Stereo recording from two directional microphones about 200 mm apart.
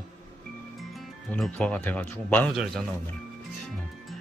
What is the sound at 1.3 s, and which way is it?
Speech, 5° left (ahead or behind).